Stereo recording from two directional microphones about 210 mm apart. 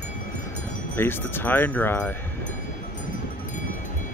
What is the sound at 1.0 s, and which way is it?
Speech, 10° left (ahead or behind).